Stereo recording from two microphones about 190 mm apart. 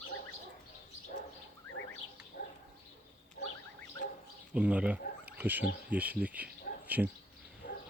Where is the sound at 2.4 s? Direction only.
45° left (ahead or behind).